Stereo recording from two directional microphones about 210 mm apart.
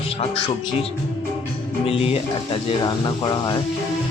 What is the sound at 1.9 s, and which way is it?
Speech, 25° left (ahead or behind).